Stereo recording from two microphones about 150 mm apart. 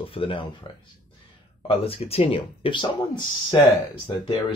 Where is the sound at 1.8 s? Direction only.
40° left (ahead or behind).